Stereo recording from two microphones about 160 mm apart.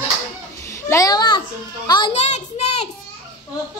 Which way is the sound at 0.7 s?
20° left (ahead or behind).